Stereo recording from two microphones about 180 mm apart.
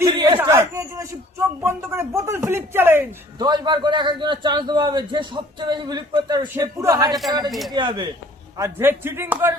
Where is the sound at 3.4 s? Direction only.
25° right (ahead or behind).